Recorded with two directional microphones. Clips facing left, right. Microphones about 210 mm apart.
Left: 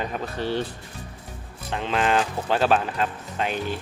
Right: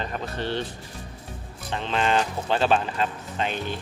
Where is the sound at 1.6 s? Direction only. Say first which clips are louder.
Left 1 dB; centre (ahead or behind).